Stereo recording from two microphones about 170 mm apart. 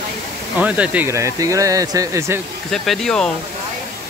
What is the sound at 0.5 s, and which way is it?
Speech, 10° right (ahead or behind).